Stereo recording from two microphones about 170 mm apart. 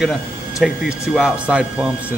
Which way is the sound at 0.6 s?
5° right (ahead or behind).